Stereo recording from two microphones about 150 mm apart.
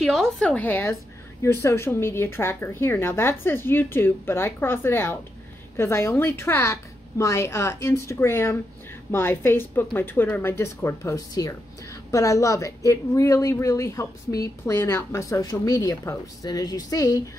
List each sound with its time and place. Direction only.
0.0 s speech: centre (ahead or behind); by 17.2 s 25° left (ahead or behind)